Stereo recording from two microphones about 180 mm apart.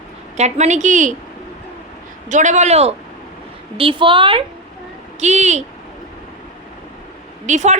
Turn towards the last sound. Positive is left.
turn(degrees=-40)  # may be behind; listen again after turning